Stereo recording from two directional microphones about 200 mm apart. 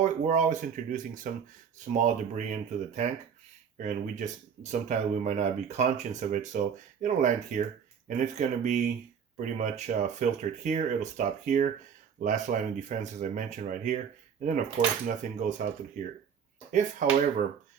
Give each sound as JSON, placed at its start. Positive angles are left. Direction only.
{"t": 0.0, "sound": "speech", "side_deg": -40}
{"t": 15.0, "sound": "speech", "side_deg": -40}